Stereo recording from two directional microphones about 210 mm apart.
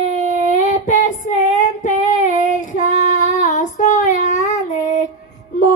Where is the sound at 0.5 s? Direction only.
35° left (ahead or behind).